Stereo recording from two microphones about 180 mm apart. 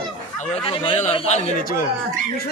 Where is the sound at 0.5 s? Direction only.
30° left (ahead or behind).